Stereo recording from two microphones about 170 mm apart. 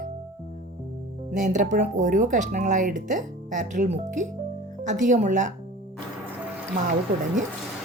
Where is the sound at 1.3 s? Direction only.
45° right (ahead or behind).